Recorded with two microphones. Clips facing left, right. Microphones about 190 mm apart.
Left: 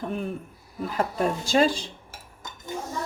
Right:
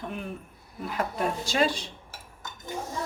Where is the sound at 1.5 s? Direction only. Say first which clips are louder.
Left 5 dB; 30° left (ahead or behind).